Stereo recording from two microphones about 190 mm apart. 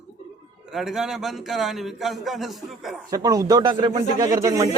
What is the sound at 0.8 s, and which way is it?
A man's voice, centre (ahead or behind).